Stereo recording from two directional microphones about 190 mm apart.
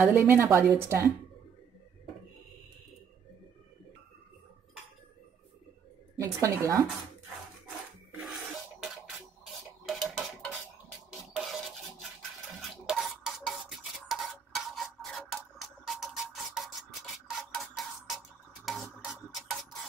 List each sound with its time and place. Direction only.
0.0 s a woman's voice: 10° right (ahead or behind)
6.1 s a woman's voice: 15° right (ahead or behind)
8.3 s a sound: centre (ahead or behind)
9.8 s dishes: centre (ahead or behind)
11.1 s music: centre (ahead or behind)
12.8 s stir: centre (ahead or behind)
19.1 s a sound: centre (ahead or behind)